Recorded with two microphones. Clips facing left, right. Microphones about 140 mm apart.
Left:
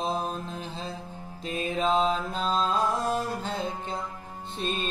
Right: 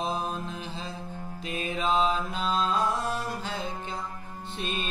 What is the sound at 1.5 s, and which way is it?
Mantra, 35° left (ahead or behind).